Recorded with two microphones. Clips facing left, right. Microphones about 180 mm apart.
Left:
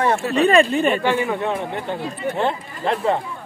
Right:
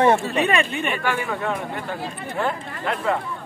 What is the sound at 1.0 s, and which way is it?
Speech, 15° left (ahead or behind).